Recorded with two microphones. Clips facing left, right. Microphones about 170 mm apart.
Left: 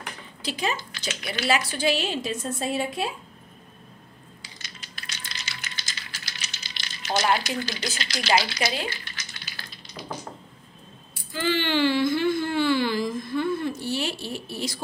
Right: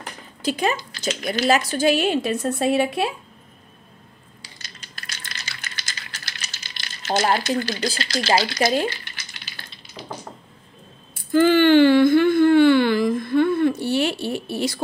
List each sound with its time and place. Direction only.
0.4 s speech: 50° right (ahead or behind)
0.9 s speech: 40° right (ahead or behind); by 3.1 s 70° right (ahead or behind)
4.6 s crushing: 50° right (ahead or behind)
5.6 s rattle: 65° right (ahead or behind)
6.7 s speech: 50° right (ahead or behind)
11.3 s speech: 50° right (ahead or behind)